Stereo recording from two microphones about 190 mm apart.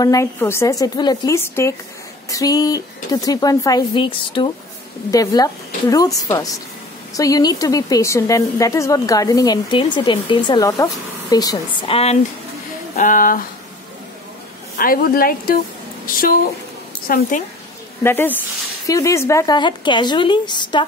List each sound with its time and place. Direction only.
0.0 s a woman's voice: 15° left (ahead or behind)
12.9 s a woman's voice: 45° left (ahead or behind)
14.8 s a woman's voice: 50° left (ahead or behind)
17.1 s a woman's voice: 50° left (ahead or behind)
18.0 s a woman's voice: 10° left (ahead or behind)